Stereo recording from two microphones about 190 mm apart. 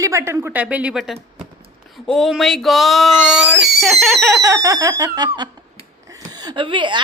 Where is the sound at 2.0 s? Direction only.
Centre (ahead or behind).